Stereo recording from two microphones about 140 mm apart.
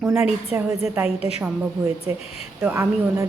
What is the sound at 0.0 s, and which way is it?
Speech, 15° right (ahead or behind).